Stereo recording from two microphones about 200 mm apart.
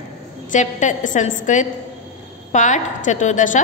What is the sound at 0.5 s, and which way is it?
A woman's voice, 40° left (ahead or behind).